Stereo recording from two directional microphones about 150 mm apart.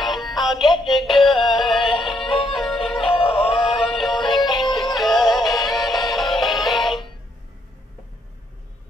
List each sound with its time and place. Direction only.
0.1 s music: centre (ahead or behind)
2.2 s music: 35° left (ahead or behind)
2.5 s music: centre (ahead or behind)
3.0 s music: 35° left (ahead or behind)
3.6 s music: centre (ahead or behind)